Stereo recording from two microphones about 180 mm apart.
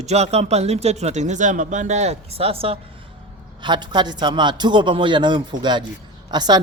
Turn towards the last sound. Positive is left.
turn(degrees=-25)  # may be behind; listen again after turning